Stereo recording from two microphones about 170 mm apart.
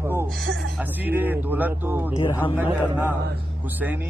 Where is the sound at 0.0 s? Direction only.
15° right (ahead or behind).